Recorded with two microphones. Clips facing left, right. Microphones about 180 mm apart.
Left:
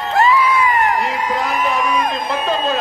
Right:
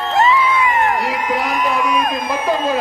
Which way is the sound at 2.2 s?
15° right (ahead or behind).